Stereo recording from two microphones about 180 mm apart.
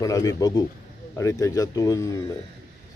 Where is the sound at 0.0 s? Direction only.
20° left (ahead or behind).